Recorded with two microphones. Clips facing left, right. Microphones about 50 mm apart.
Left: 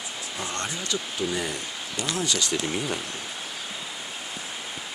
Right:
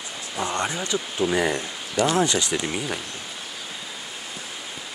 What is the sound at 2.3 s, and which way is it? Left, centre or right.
Speech, centre.